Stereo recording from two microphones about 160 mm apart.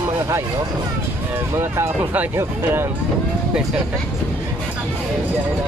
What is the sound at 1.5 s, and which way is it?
Speech, 15° right (ahead or behind).